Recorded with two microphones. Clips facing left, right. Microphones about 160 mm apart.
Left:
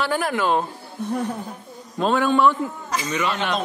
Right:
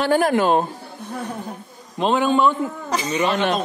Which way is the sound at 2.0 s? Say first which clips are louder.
Right 1 dB; 20° right (ahead or behind).